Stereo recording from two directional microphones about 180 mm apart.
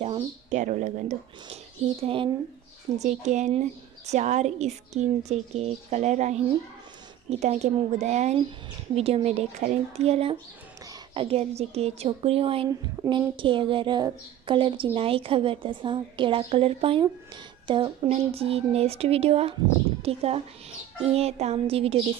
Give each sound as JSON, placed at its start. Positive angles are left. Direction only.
{"t": 0.0, "sound": "speech", "side_deg": -35}
{"t": 3.0, "sound": "a woman's voice", "side_deg": -40}